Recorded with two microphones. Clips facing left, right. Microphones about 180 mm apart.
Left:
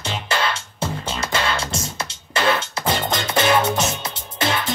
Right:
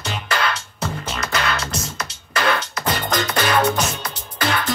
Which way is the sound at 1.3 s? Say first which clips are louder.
Even; 25° left (ahead or behind).